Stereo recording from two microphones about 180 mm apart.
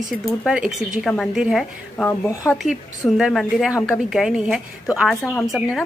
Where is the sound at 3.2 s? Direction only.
Centre (ahead or behind).